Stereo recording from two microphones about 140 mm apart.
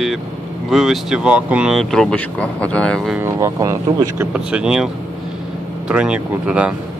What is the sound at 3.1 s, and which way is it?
Speech, 20° right (ahead or behind).